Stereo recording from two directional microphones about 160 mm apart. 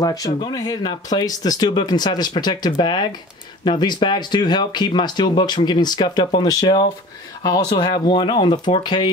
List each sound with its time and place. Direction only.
0.0 s speech: 25° left (ahead or behind)